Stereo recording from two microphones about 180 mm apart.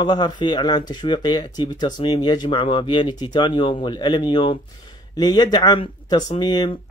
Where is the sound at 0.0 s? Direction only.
25° left (ahead or behind).